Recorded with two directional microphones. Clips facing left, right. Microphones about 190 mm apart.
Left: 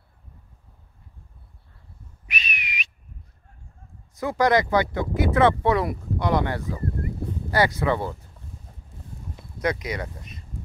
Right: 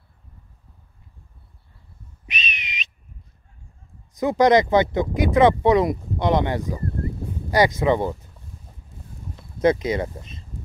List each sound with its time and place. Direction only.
2.2 s whistling: 20° right (ahead or behind)
4.1 s speech: 20° right (ahead or behind)
9.6 s speech: 25° right (ahead or behind)